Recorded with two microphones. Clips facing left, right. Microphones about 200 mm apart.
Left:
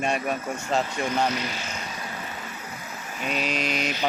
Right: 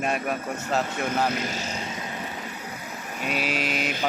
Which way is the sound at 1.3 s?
45° right (ahead or behind).